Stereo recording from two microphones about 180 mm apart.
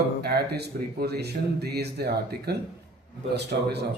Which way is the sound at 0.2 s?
60° right (ahead or behind).